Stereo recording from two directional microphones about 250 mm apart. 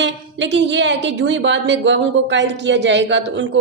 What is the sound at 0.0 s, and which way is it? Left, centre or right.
A woman's voice, right.